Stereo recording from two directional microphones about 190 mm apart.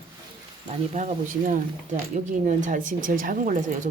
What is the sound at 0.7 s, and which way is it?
Speech, 35° right (ahead or behind).